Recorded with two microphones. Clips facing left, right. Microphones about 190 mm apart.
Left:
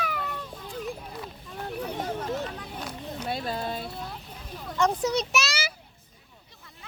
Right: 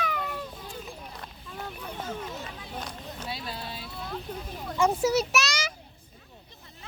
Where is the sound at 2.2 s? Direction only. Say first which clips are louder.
Left 7 dB; 45° left (ahead or behind).